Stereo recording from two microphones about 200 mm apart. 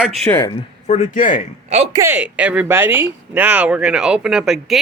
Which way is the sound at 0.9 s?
40° left (ahead or behind).